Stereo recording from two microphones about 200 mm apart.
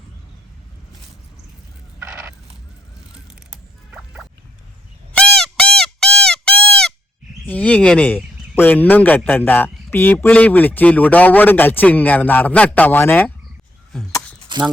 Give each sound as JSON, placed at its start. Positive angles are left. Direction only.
{"t": 3.9, "sound": "music", "side_deg": -5}
{"t": 5.1, "sound": "honk", "side_deg": 5}
{"t": 7.5, "sound": "speech", "side_deg": 5}
{"t": 14.5, "sound": "speech", "side_deg": -25}